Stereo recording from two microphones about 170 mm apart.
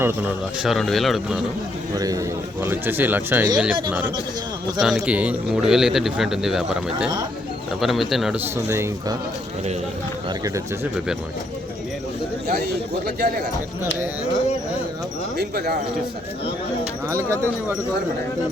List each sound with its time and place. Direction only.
0.0 s a man's voice: 5° right (ahead or behind)
2.0 s a man's voice: 20° right (ahead or behind); by 8.4 s centre (ahead or behind)
8.5 s speech: 15° right (ahead or behind)
12.5 s speech: 70° right (ahead or behind)
15.4 s speech: 70° right (ahead or behind)
17.1 s speech: 15° right (ahead or behind)